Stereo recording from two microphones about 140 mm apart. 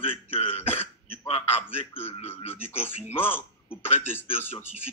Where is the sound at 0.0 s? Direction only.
45° left (ahead or behind).